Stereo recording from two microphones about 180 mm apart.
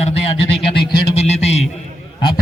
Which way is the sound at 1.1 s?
35° left (ahead or behind).